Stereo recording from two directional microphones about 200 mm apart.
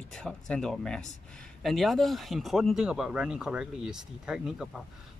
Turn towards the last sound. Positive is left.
turn(degrees=-5)  # may be behind; listen again after turning